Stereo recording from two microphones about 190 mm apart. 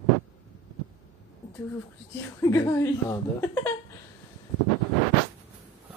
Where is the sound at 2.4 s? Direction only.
15° left (ahead or behind).